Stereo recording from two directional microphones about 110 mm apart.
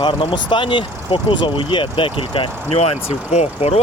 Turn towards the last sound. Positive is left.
turn(degrees=80)